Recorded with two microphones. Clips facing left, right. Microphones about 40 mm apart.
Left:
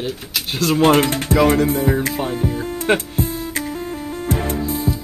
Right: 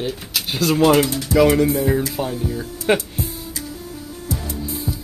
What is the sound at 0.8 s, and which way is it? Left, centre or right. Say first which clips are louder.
Speech: left 1 dB; left.